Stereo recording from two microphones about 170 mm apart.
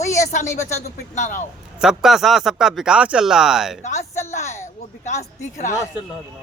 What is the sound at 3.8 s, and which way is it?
Speech, 45° left (ahead or behind).